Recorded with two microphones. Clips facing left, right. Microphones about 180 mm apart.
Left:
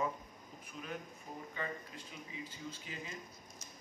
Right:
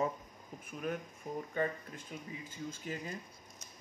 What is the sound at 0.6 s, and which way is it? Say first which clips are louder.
Speech: right 6 dB; 50° right (ahead or behind).